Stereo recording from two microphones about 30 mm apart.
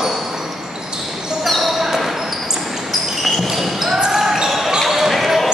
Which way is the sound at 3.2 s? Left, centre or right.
Centre.